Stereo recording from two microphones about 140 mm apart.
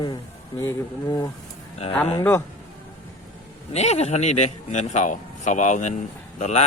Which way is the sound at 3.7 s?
50° left (ahead or behind).